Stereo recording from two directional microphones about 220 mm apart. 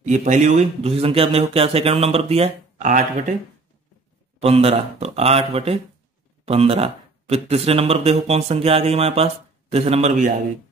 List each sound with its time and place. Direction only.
0.0 s a man's voice: 35° right (ahead or behind)
4.4 s a man's voice: 25° right (ahead or behind)